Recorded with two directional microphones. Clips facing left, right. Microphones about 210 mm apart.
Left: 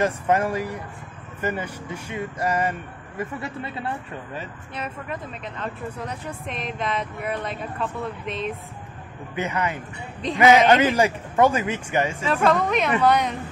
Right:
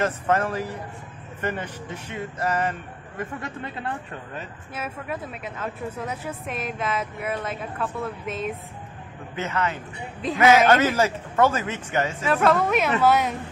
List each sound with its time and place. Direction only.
0.0 s speech: 10° left (ahead or behind)
4.4 s speech: 5° right (ahead or behind)
9.3 s speech: 15° left (ahead or behind)
10.2 s speech: centre (ahead or behind)
10.7 s speech: 15° left (ahead or behind)
12.2 s speech: centre (ahead or behind)